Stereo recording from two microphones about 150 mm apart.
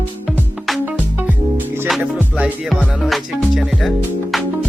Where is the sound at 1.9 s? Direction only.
Centre (ahead or behind).